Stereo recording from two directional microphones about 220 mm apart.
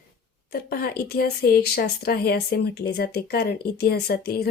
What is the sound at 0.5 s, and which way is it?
Speech, 45° left (ahead or behind).